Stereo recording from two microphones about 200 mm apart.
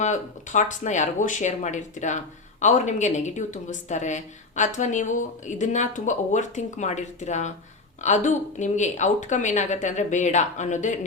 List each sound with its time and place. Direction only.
0.0 s a woman's voice: 35° left (ahead or behind)